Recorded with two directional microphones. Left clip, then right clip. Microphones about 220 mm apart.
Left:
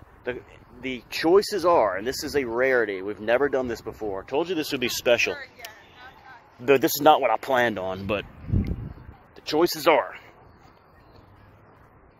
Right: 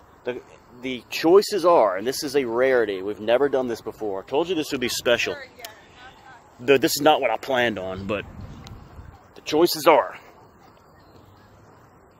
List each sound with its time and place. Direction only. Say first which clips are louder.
0.2 s speech: right 2 dB; 10° left (ahead or behind)
4.6 s speech: even; 10° right (ahead or behind)
5.2 s a sound: left 1 dB; 40° right (ahead or behind)
6.9 s speech: left 1 dB; centre (ahead or behind)
9.3 s a sound: right 3 dB; 5° left (ahead or behind)
9.8 s speech: right 3 dB; 5° left (ahead or behind)